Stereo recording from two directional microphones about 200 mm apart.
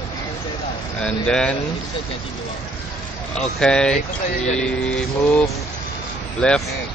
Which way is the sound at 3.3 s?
5° left (ahead or behind).